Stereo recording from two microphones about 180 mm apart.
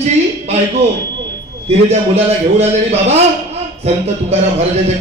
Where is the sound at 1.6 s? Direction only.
35° right (ahead or behind).